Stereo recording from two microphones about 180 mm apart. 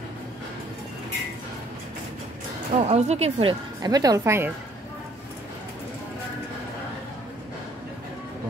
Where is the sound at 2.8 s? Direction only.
35° right (ahead or behind).